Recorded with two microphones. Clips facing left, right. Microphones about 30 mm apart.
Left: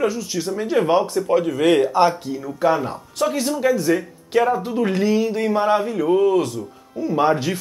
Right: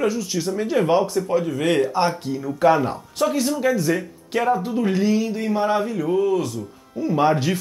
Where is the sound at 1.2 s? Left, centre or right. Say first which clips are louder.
Left 4 dB; centre.